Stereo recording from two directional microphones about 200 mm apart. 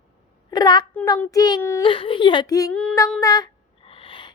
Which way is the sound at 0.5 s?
20° left (ahead or behind).